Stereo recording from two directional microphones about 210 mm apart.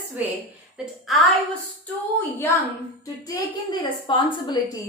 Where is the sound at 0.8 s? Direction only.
Centre (ahead or behind).